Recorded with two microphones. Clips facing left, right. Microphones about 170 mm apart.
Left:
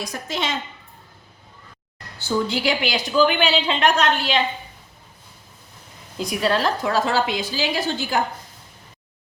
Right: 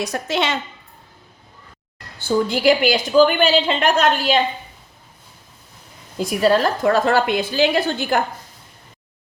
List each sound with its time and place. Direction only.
0.0 s a woman's voice: 70° right (ahead or behind)
2.1 s a woman's voice: 50° right (ahead or behind)
6.1 s a woman's voice: 50° right (ahead or behind)